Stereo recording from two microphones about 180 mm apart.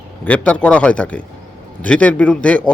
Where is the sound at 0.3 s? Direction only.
5° left (ahead or behind).